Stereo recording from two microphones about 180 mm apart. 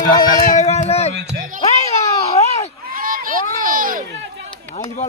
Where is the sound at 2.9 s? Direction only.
50° right (ahead or behind).